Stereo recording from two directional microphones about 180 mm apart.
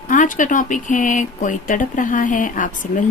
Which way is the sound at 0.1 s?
45° left (ahead or behind).